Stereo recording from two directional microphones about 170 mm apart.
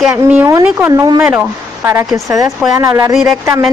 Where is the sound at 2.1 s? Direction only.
20° right (ahead or behind).